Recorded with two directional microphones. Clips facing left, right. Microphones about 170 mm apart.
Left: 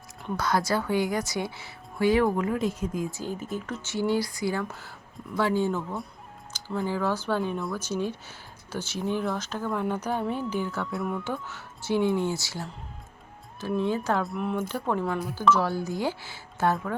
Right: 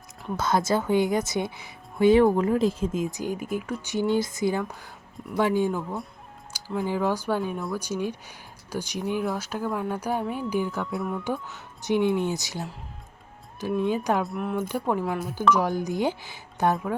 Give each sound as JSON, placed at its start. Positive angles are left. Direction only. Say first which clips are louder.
{"t": 0.3, "sound": "speech", "louder": "right 2 dB", "side_deg": -25}
{"t": 6.8, "sound": "speech", "louder": "right 2 dB", "side_deg": -15}
{"t": 10.9, "sound": "speech", "louder": "left 1 dB", "side_deg": 0}
{"t": 11.4, "sound": "speech", "louder": "right 3 dB", "side_deg": -20}
{"t": 13.7, "sound": "speech", "louder": "right 2 dB", "side_deg": -15}
{"t": 14.3, "sound": "speech", "louder": "right 1 dB", "side_deg": 0}
{"t": 14.7, "sound": "speech", "louder": "right 2 dB", "side_deg": -15}
{"t": 15.4, "sound": "speech", "louder": "right 1 dB", "side_deg": -15}